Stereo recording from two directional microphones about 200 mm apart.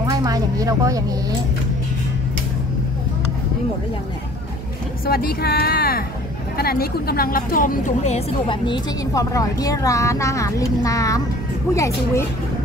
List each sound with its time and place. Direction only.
0.0 s speech: 20° right (ahead or behind)
5.0 s a woman's voice: 50° left (ahead or behind); by 12.3 s 15° left (ahead or behind)